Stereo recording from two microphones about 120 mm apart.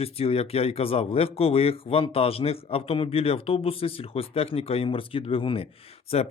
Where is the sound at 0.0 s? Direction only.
55° left (ahead or behind).